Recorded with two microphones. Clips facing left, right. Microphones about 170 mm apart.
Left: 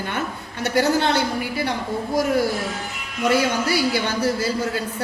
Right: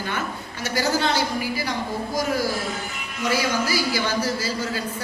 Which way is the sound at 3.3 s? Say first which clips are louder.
Left 3 dB; 60° left (ahead or behind).